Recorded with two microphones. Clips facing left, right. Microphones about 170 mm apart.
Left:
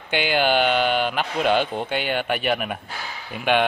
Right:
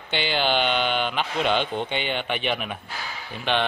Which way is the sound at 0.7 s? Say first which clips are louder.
Left 4 dB; 40° left (ahead or behind).